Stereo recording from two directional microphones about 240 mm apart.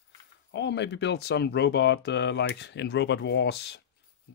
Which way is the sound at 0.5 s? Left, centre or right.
Left.